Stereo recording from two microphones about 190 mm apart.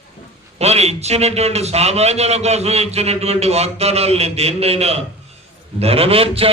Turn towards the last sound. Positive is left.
turn(degrees=-30)  # may be behind; listen again after turning